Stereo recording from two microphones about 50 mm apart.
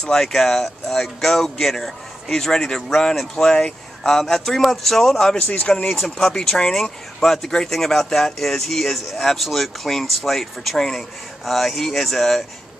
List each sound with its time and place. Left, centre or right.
0.0 s speech: centre
5.6 s speech: centre
5.9 s speech: centre